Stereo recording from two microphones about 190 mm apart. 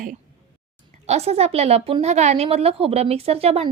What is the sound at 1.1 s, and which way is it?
A woman's voice, 35° right (ahead or behind).